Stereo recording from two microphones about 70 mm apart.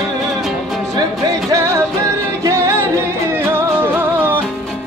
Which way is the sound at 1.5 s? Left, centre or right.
Right.